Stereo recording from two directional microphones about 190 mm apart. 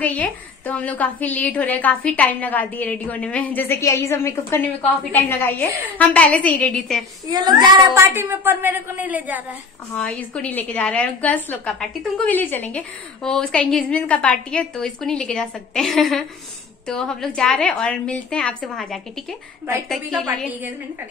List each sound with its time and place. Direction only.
0.0 s a woman's voice: 10° left (ahead or behind)
7.2 s a woman's voice: 20° right (ahead or behind)
9.9 s a woman's voice: 5° left (ahead or behind)